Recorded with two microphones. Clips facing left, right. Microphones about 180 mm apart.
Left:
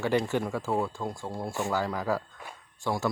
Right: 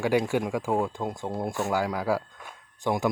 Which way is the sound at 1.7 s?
10° right (ahead or behind).